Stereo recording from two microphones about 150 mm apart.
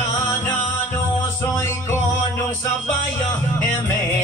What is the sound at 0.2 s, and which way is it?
Music, 15° left (ahead or behind).